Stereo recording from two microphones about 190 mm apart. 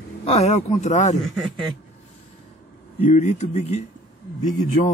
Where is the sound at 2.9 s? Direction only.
35° left (ahead or behind).